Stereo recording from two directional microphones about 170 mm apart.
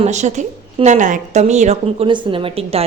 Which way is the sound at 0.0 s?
45° right (ahead or behind).